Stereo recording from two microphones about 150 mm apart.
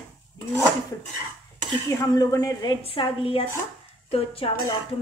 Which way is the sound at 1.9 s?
25° left (ahead or behind).